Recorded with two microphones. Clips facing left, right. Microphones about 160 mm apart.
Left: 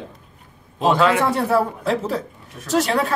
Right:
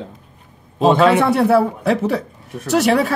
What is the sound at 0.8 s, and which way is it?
Speech, 20° right (ahead or behind).